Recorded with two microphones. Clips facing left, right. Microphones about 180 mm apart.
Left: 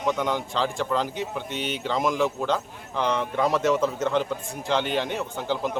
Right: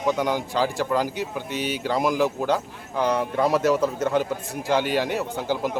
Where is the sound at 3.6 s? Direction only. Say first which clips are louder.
Right 2 dB; 40° right (ahead or behind).